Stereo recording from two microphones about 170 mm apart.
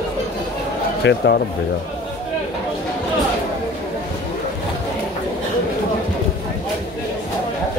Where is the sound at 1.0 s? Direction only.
80° left.